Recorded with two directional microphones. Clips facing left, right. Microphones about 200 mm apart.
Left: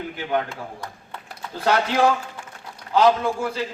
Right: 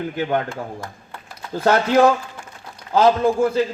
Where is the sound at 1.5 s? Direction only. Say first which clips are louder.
Right 5 dB; 45° right (ahead or behind).